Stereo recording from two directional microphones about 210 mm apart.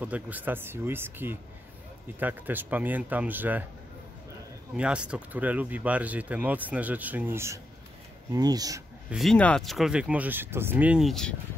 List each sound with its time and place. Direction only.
0.0 s speech: 10° right (ahead or behind)
4.7 s speech: 5° right (ahead or behind)
9.1 s speech: centre (ahead or behind)